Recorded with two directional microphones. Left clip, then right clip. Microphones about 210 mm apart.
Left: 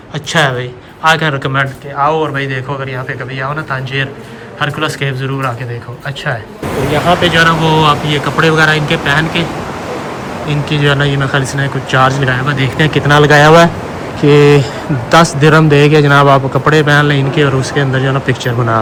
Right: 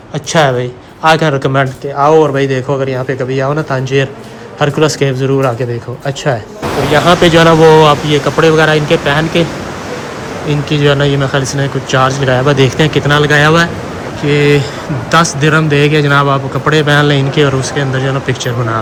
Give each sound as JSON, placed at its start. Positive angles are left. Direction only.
{"t": 0.3, "sound": "a man's voice", "side_deg": -25}
{"t": 7.2, "sound": "speech", "side_deg": -30}
{"t": 7.4, "sound": "speech", "side_deg": -15}
{"t": 10.5, "sound": "a man's voice", "side_deg": -5}